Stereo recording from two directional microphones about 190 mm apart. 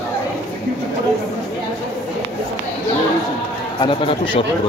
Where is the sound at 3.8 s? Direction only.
25° left (ahead or behind).